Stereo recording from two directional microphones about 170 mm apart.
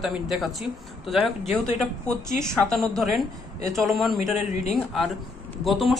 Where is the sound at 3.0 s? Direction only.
Centre (ahead or behind).